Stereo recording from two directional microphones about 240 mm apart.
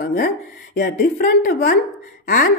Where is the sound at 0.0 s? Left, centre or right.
Left.